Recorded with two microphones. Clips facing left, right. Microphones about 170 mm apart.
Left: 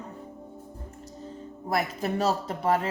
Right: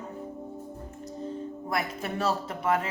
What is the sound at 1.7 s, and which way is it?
Speech, 35° left (ahead or behind).